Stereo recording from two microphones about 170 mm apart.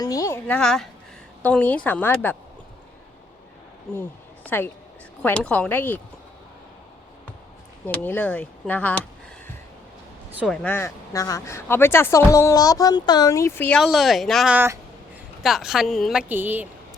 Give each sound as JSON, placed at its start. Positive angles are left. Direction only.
{"t": 0.0, "sound": "a sound", "side_deg": 20}
{"t": 1.4, "sound": "speech", "side_deg": 10}
{"t": 4.4, "sound": "a woman's voice", "side_deg": 10}
{"t": 7.9, "sound": "speech", "side_deg": 10}
{"t": 10.3, "sound": "speech", "side_deg": 0}
{"t": 13.8, "sound": "speech", "side_deg": 0}
{"t": 14.5, "sound": "speech", "side_deg": -15}
{"t": 15.4, "sound": "speech", "side_deg": 0}
{"t": 16.3, "sound": "speech", "side_deg": -10}